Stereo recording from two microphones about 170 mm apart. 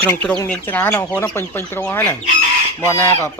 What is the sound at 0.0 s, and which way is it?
Speech, 5° left (ahead or behind).